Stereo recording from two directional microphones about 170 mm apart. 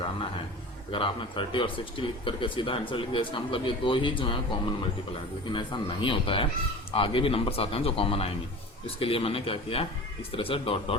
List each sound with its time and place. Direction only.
0.9 s speech: 30° left (ahead or behind)
5.5 s speech: 30° left (ahead or behind)